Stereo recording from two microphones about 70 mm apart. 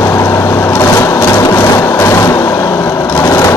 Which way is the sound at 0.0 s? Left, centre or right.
Left.